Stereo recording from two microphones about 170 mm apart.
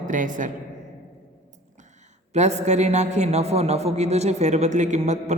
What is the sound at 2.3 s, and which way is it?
A man's voice, 40° right (ahead or behind).